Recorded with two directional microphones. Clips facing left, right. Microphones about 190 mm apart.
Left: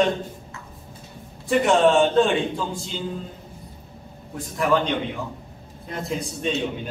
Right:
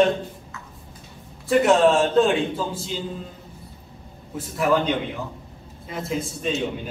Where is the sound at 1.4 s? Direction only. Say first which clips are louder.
Right 1 dB; centre (ahead or behind).